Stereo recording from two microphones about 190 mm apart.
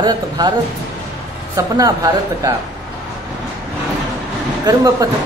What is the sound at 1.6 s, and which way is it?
Speech, 20° right (ahead or behind).